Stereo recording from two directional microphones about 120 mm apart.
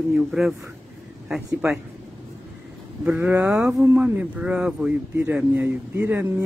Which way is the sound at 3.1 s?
20° right (ahead or behind).